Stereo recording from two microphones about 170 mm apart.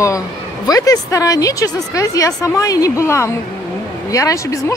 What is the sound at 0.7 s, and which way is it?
Speech, 20° left (ahead or behind).